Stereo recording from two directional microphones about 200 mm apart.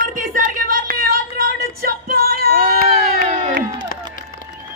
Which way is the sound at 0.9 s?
45° right (ahead or behind).